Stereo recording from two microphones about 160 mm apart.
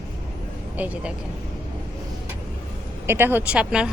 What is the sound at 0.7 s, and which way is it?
Speech, 10° right (ahead or behind).